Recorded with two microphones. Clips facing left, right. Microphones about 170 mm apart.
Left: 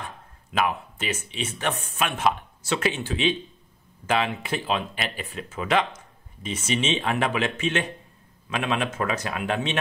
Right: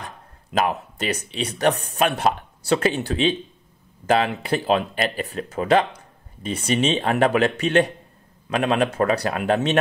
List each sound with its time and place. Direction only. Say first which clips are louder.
0.0 s speech: right 1 dB; 40° right (ahead or behind)